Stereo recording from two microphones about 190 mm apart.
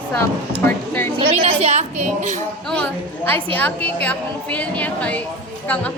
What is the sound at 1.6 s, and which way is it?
Speech, 35° right (ahead or behind).